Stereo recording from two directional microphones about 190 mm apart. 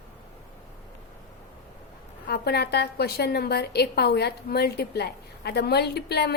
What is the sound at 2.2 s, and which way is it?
A woman's voice, 55° left (ahead or behind).